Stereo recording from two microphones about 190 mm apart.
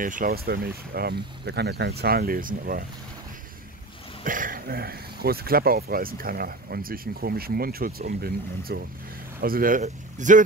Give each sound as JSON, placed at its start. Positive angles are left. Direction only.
{"t": 0.0, "sound": "speech", "side_deg": -45}
{"t": 4.2, "sound": "speech", "side_deg": -45}